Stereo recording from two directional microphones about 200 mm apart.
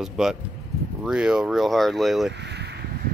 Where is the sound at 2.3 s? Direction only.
60° right (ahead or behind).